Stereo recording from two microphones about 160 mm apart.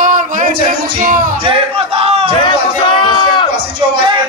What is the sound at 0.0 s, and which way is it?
Music, 55° right (ahead or behind).